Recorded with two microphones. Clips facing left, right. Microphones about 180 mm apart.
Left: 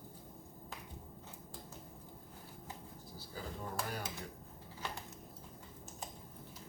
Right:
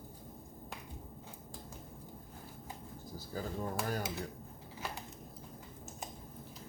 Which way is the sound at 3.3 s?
45° right (ahead or behind).